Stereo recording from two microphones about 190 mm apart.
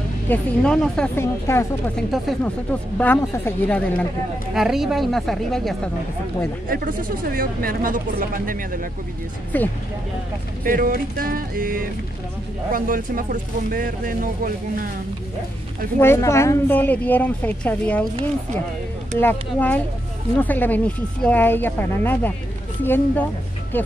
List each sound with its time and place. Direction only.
0.3 s a woman's voice: 5° left (ahead or behind)
2.0 s a woman's voice: centre (ahead or behind)
3.2 s a woman's voice: 10° left (ahead or behind)
4.6 s a woman's voice: centre (ahead or behind)
6.7 s speech: 45° right (ahead or behind)
9.5 s a woman's voice: 10° left (ahead or behind)
10.6 s speech: 50° right (ahead or behind)
16.0 s a woman's voice: 15° left (ahead or behind)
19.1 s a woman's voice: 10° left (ahead or behind)